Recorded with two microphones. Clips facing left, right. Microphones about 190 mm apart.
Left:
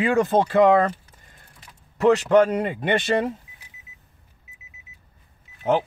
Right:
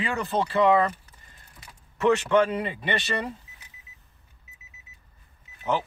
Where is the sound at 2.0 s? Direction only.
40° left (ahead or behind).